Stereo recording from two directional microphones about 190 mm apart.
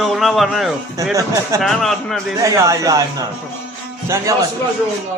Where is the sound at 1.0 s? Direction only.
15° right (ahead or behind).